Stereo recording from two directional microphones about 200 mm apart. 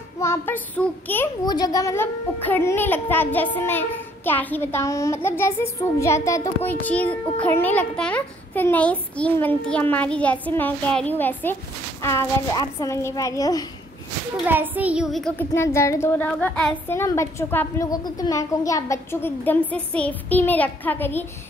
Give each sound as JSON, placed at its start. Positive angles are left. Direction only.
{"t": 0.2, "sound": "a child's voice", "side_deg": 10}
{"t": 14.3, "sound": "a child's voice", "side_deg": -10}